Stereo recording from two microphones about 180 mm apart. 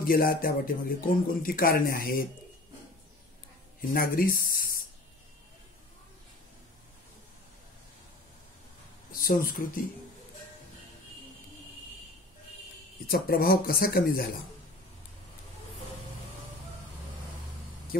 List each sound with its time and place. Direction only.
0.0 s speech: 55° left (ahead or behind)
3.9 s speech: 55° left (ahead or behind)
9.2 s speech: 50° left (ahead or behind)
13.1 s speech: 55° left (ahead or behind)